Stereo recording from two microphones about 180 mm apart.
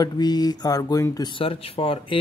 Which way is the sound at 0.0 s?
25° left (ahead or behind).